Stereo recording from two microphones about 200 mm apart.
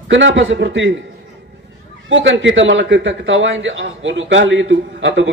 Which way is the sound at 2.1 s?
70° right (ahead or behind).